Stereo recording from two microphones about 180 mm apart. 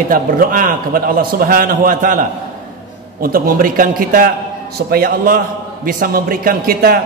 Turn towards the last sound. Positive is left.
turn(degrees=-55)  # may be behind; listen again after turning